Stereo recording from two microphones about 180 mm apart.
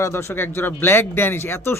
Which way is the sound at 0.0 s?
15° left (ahead or behind).